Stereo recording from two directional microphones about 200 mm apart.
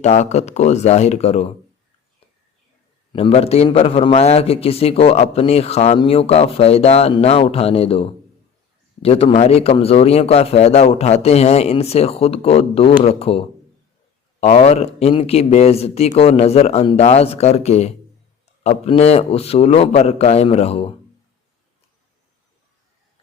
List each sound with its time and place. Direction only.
0.0 s a man's voice: 35° left (ahead or behind)
3.1 s a man's voice: 30° left (ahead or behind)